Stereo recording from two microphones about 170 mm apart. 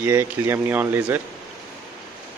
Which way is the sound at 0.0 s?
15° right (ahead or behind).